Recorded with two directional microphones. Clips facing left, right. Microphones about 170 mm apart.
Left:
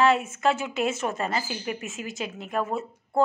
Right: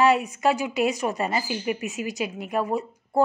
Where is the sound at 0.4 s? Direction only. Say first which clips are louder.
Right 2 dB; 10° right (ahead or behind).